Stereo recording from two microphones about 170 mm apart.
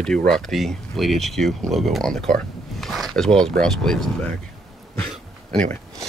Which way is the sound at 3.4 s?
5° left (ahead or behind).